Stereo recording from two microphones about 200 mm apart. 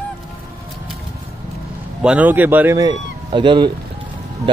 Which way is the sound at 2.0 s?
5° right (ahead or behind).